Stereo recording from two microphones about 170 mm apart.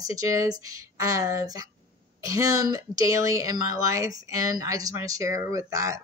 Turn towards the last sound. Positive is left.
turn(degrees=-20)  # may be behind; listen again after turning